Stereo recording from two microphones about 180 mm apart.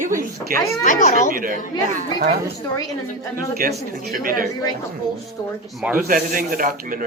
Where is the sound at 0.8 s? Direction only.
45° left (ahead or behind).